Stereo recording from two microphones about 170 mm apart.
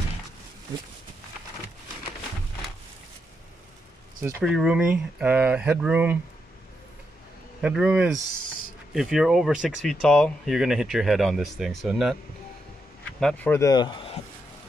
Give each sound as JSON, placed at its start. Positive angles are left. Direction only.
{"t": 4.2, "sound": "speech", "side_deg": -10}
{"t": 7.6, "sound": "speech", "side_deg": -5}
{"t": 13.2, "sound": "speech", "side_deg": 5}